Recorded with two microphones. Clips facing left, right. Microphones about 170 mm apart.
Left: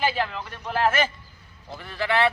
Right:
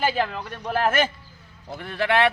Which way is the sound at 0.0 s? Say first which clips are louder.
Right 2 dB; 50° right (ahead or behind).